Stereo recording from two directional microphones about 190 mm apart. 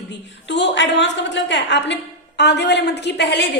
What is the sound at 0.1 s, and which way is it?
A woman's voice, 65° left (ahead or behind).